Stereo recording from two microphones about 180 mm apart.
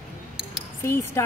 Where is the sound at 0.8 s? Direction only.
15° left (ahead or behind).